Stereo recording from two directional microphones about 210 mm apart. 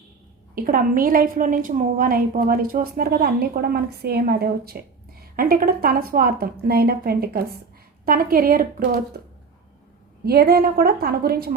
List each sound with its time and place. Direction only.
0.5 s a woman's voice: 40° right (ahead or behind)
10.2 s a woman's voice: 45° right (ahead or behind)